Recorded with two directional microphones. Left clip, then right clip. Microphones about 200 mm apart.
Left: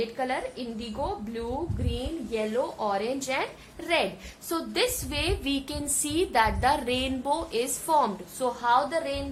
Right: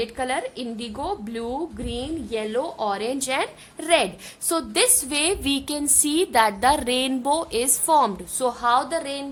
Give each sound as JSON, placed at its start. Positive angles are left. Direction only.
{"t": 0.0, "sound": "a woman's voice", "side_deg": -50}
{"t": 1.9, "sound": "a woman's voice", "side_deg": -50}